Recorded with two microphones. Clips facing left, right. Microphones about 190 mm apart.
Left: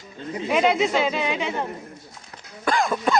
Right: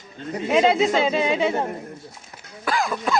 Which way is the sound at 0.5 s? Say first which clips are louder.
Right 2 dB; 30° right (ahead or behind).